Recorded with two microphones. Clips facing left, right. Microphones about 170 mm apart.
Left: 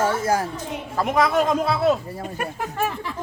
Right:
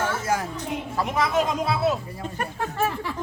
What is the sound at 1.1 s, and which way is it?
Speech, 50° left (ahead or behind).